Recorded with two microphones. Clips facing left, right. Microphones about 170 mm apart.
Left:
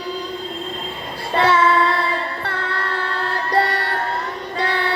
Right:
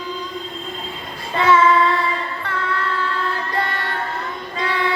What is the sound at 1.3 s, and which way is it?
Child singing, 35° left (ahead or behind).